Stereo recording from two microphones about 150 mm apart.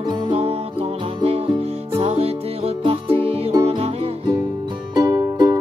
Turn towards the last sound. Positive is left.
turn(degrees=-20)  # may be behind; listen again after turning